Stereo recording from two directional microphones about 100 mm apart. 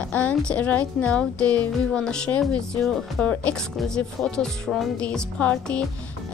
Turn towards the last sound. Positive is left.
turn(degrees=10)  # may be behind; listen again after turning